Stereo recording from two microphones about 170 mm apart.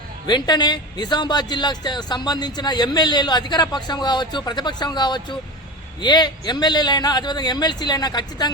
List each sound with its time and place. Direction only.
0.3 s speech: 25° left (ahead or behind)